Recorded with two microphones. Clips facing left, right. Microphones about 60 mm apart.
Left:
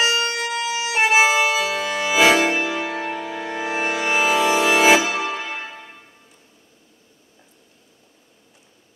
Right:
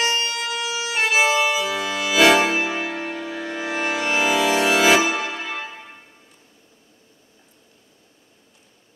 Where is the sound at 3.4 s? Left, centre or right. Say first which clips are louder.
Left 1 dB; centre.